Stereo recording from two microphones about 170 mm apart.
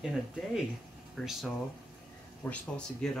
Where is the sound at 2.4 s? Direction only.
5° left (ahead or behind).